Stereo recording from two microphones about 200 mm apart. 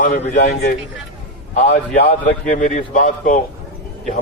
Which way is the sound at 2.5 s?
40° left (ahead or behind).